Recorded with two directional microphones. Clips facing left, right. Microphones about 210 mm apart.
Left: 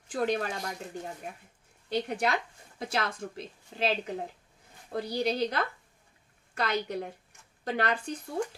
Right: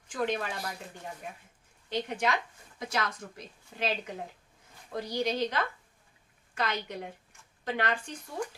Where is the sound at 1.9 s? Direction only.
35° left (ahead or behind).